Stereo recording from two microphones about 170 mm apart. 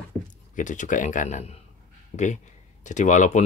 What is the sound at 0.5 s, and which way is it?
Speech, 45° left (ahead or behind).